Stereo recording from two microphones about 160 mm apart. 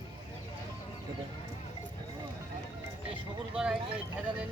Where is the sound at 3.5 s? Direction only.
5° right (ahead or behind).